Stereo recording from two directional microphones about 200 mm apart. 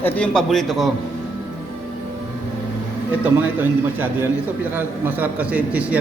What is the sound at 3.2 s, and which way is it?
A man's voice, 10° right (ahead or behind).